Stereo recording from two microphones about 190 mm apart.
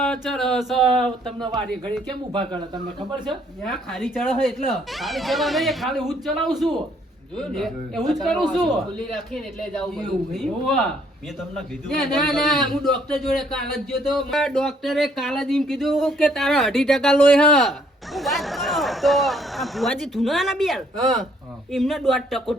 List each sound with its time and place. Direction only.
0.0 s speech: 5° left (ahead or behind)
2.3 s speech: 25° right (ahead or behind)
3.2 s speech: centre (ahead or behind)
10.3 s speech: centre (ahead or behind)
12.3 s speech: centre (ahead or behind)
20.9 s speech: 20° right (ahead or behind)
21.7 s speech: centre (ahead or behind)